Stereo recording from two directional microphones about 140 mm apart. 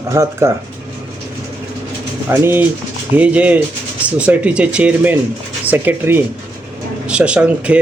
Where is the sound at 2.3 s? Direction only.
15° right (ahead or behind).